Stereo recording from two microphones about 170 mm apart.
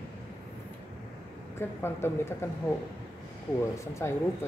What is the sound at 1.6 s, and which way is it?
Speech, 15° left (ahead or behind).